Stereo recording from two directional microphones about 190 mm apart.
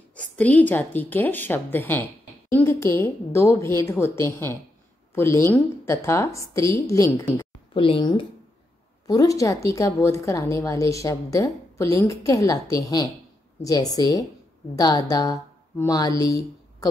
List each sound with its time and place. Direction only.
0.1 s a woman's voice: 5° left (ahead or behind)
7.7 s a woman's voice: 25° left (ahead or behind)